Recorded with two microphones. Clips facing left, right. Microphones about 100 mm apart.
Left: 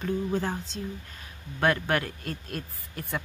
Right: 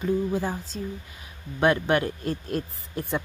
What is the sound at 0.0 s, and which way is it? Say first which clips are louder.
Speech: right 3 dB; 10° right (ahead or behind).